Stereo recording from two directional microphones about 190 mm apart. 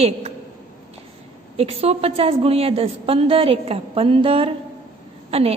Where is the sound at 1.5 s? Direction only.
30° right (ahead or behind).